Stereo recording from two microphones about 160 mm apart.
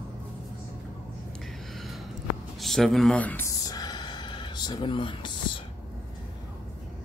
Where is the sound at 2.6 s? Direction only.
Centre (ahead or behind); by 5.3 s 30° left (ahead or behind).